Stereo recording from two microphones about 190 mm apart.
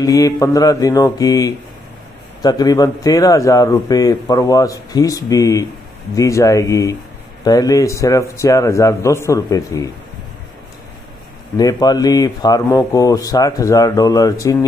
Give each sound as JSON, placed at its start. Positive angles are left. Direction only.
{"t": 0.0, "sound": "a man's voice", "side_deg": 20}
{"t": 11.5, "sound": "speech", "side_deg": 20}